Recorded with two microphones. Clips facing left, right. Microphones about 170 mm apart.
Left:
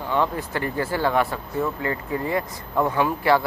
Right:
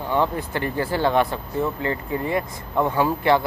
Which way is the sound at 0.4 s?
30° right (ahead or behind).